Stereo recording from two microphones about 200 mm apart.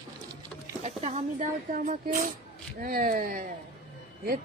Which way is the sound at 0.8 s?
35° right (ahead or behind).